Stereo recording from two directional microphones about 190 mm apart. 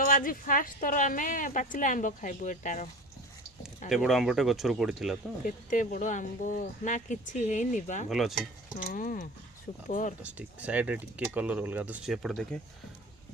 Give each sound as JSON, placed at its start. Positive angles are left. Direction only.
{"t": 0.0, "sound": "a woman's voice", "side_deg": 50}
{"t": 3.8, "sound": "speech", "side_deg": 0}
{"t": 5.5, "sound": "speech", "side_deg": 40}
{"t": 8.1, "sound": "speech", "side_deg": 0}
{"t": 8.8, "sound": "a woman's voice", "side_deg": 45}
{"t": 10.2, "sound": "speech", "side_deg": -5}